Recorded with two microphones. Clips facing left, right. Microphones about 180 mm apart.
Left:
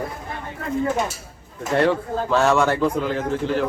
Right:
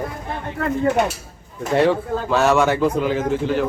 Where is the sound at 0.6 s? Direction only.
70° right (ahead or behind).